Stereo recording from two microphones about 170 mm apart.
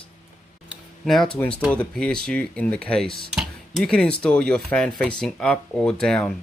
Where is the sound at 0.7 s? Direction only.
Centre (ahead or behind).